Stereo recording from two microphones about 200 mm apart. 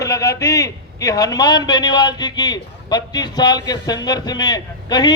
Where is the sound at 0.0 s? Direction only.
15° left (ahead or behind).